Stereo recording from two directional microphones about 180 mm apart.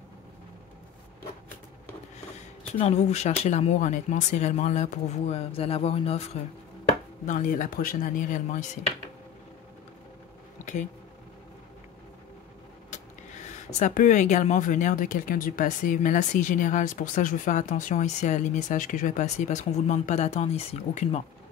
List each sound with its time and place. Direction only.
2.8 s speech: 40° left (ahead or behind)
7.2 s speech: 45° left (ahead or behind)
10.6 s a sound: 45° left (ahead or behind)
12.9 s speech: 40° left (ahead or behind)